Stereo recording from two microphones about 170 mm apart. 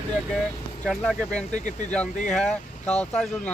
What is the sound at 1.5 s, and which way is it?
Speech, 45° left (ahead or behind).